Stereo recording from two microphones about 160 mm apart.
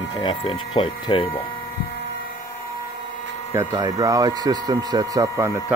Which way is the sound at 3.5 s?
20° right (ahead or behind).